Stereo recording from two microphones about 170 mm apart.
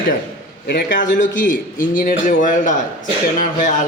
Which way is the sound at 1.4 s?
55° left (ahead or behind).